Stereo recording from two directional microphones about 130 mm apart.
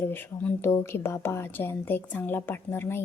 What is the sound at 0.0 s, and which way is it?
A woman's voice, 15° left (ahead or behind).